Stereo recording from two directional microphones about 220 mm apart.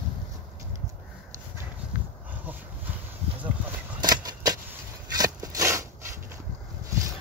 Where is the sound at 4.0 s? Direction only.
20° right (ahead or behind).